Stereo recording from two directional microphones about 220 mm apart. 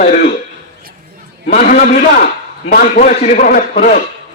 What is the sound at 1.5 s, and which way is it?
A man's voice, 35° left (ahead or behind).